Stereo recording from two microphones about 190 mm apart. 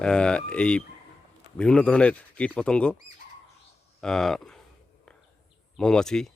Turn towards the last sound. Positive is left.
turn(degrees=5)  # may be behind; listen again after turning